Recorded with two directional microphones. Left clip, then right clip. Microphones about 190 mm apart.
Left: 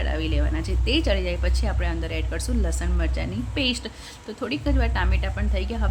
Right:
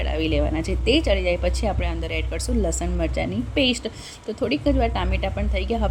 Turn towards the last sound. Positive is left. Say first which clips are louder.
# right 5 dB
turn(degrees=-15)  # may be behind; listen again after turning